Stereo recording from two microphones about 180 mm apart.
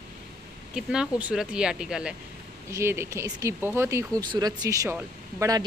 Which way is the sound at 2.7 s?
15° right (ahead or behind).